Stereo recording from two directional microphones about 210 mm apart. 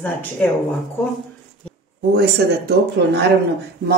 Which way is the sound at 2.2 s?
50° right (ahead or behind).